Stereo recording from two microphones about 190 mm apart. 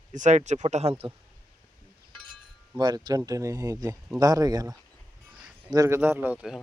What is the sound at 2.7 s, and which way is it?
Speech, 20° right (ahead or behind).